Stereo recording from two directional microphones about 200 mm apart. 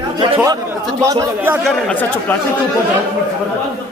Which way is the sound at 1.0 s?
15° right (ahead or behind).